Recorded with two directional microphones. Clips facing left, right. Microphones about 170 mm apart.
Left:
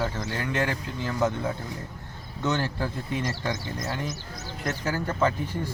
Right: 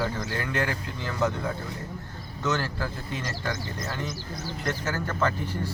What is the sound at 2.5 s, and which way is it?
Speech, 20° left (ahead or behind).